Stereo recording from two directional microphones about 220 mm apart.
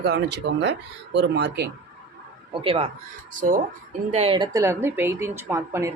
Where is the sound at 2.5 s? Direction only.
25° right (ahead or behind).